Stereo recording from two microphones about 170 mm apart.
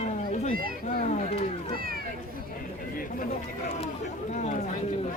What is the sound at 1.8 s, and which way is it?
Speech, 60° right (ahead or behind).